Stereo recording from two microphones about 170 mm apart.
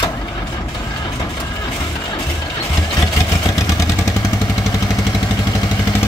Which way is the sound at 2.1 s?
20° left (ahead or behind).